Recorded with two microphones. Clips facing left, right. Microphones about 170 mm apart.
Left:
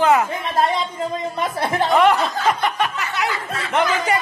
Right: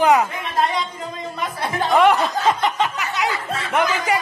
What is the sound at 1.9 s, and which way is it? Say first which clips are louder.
Snicker: right 2 dB; 15° right (ahead or behind).